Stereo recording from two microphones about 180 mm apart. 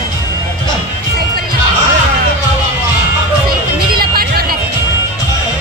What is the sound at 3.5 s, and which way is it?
Music, 55° right (ahead or behind).